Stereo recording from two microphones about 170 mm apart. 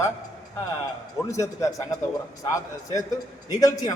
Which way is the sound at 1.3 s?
20° left (ahead or behind).